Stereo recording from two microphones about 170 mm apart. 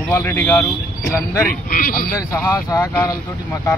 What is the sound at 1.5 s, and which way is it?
Speech, 55° left (ahead or behind).